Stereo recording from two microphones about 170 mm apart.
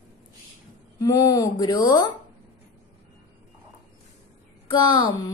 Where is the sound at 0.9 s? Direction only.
20° left (ahead or behind).